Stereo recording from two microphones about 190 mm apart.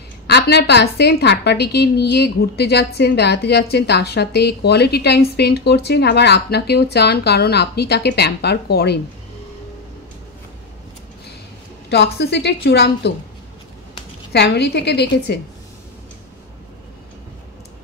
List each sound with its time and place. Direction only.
0.3 s a woman's voice: 60° left (ahead or behind)
11.9 s a woman's voice: 60° left (ahead or behind)
14.3 s a woman's voice: 60° left (ahead or behind)